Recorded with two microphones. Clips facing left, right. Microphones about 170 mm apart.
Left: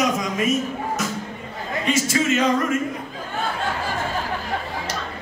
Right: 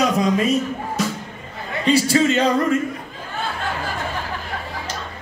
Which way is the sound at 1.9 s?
30° right (ahead or behind).